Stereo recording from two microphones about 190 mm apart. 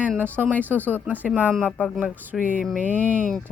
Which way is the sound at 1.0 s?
10° right (ahead or behind).